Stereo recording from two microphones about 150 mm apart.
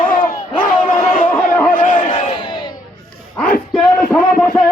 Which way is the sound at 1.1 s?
65° left (ahead or behind).